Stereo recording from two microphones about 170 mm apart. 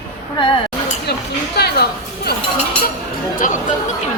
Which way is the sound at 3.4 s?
50° left (ahead or behind).